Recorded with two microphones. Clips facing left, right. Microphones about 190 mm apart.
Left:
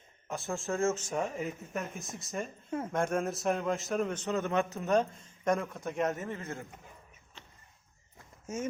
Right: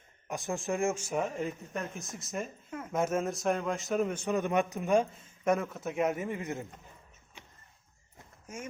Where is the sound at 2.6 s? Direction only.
30° left (ahead or behind).